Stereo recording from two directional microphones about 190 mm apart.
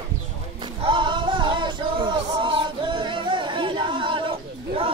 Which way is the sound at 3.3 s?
25° right (ahead or behind).